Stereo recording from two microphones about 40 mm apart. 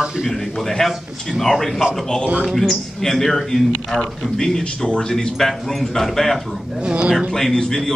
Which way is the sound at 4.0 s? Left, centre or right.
Centre.